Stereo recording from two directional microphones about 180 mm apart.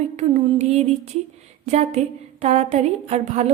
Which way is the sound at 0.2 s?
35° right (ahead or behind).